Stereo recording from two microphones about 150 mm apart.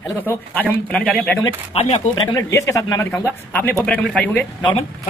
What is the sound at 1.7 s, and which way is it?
Speech, 45° left (ahead or behind).